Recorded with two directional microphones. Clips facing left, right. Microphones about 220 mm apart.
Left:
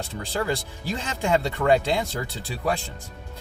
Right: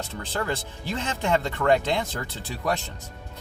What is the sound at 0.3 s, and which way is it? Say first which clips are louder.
Speech: left 2 dB; 15° left (ahead or behind).